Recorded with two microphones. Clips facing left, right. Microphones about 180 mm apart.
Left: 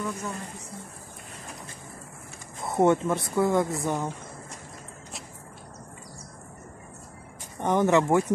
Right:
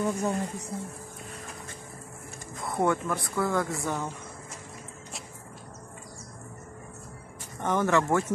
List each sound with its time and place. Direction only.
0.0 s speech: 35° right (ahead or behind)
2.6 s speech: 25° left (ahead or behind)
7.6 s speech: 20° left (ahead or behind)